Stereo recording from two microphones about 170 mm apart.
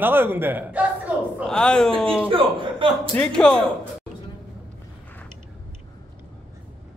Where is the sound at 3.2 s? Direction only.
5° left (ahead or behind).